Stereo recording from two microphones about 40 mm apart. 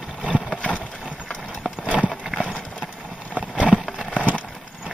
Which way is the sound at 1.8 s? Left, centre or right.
Right.